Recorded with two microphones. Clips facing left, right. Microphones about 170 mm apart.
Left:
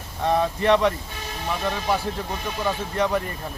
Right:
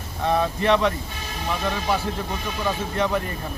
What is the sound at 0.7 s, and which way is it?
Speech, 15° left (ahead or behind).